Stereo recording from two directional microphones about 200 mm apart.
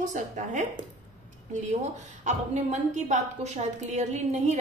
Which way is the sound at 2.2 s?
35° right (ahead or behind).